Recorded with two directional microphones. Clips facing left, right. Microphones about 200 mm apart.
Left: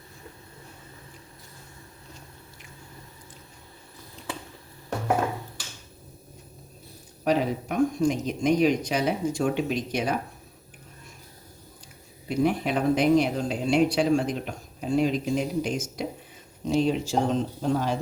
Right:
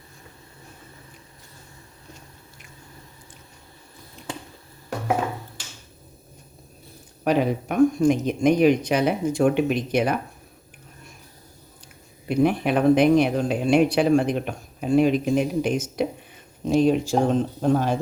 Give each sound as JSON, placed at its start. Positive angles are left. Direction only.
{"t": 7.3, "sound": "speech", "side_deg": -60}
{"t": 12.3, "sound": "speech", "side_deg": -60}